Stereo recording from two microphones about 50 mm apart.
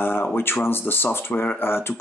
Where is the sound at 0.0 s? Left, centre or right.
Left.